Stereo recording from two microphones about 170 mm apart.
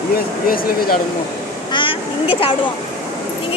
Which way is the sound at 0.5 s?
60° left (ahead or behind).